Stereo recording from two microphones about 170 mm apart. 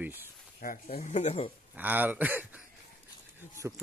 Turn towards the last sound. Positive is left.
turn(degrees=-10)  # may be behind; listen again after turning